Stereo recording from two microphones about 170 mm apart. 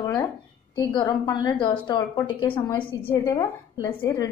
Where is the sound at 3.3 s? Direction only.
15° left (ahead or behind).